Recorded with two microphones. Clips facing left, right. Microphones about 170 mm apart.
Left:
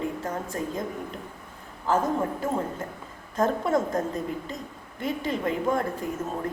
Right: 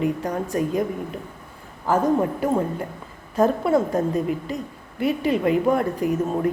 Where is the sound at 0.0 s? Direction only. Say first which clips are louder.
Right 6 dB; 15° right (ahead or behind).